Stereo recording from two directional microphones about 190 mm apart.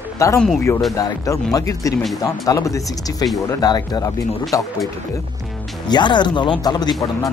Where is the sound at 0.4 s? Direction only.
5° left (ahead or behind).